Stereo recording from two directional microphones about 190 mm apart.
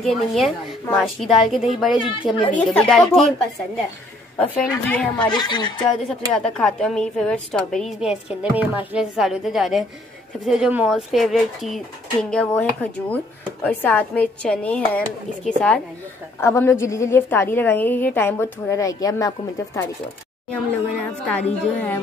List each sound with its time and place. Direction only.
0.0 s a woman's voice: centre (ahead or behind)
4.4 s a woman's voice: 10° left (ahead or behind)
5.3 s speech: 25° left (ahead or behind)
6.0 s a woman's voice: 5° left (ahead or behind)
20.5 s a woman's voice: 5° left (ahead or behind)